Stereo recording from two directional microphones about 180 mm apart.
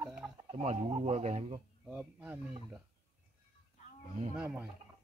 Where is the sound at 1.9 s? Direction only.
5° right (ahead or behind).